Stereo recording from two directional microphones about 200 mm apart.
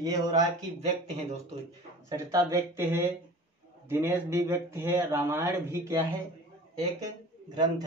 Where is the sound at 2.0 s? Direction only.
15° right (ahead or behind).